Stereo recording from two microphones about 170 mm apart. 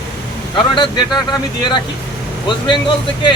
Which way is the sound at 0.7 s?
25° left (ahead or behind).